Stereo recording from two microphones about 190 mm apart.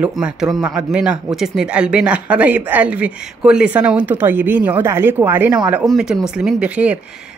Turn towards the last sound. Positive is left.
turn(degrees=-5)  # may be behind; listen again after turning